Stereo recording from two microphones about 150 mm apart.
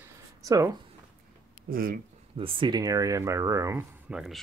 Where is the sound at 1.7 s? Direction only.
70° right (ahead or behind).